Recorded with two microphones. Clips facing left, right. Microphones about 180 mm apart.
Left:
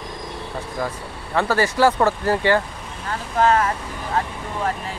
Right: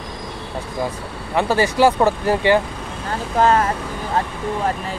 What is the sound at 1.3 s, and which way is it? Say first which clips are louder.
Speech: right 2 dB; 15° right (ahead or behind).